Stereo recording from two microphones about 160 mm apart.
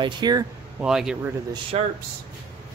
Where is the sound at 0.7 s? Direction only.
5° right (ahead or behind).